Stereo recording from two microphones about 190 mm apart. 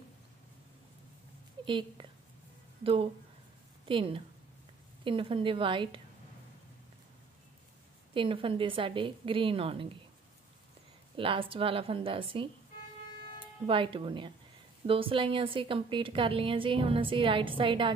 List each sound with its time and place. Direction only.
1.7 s a woman's voice: 25° right (ahead or behind)
8.1 s a woman's voice: 25° right (ahead or behind)
11.1 s a woman's voice: 30° right (ahead or behind)
13.7 s a woman's voice: 30° right (ahead or behind)